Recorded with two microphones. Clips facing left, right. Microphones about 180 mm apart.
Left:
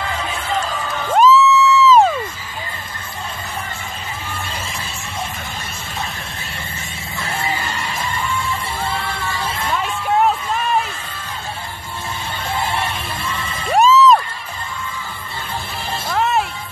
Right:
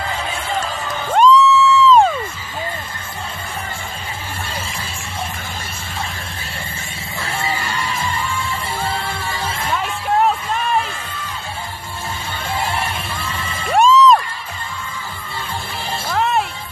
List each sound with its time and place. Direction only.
1.1 s music: 5° left (ahead or behind)
9.8 s music: centre (ahead or behind)
13.7 s music: centre (ahead or behind)
16.1 s music: centre (ahead or behind)